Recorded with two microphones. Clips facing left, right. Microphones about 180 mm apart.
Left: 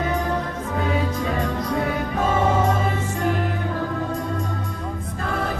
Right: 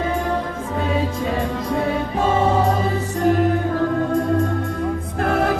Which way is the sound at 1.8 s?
30° right (ahead or behind).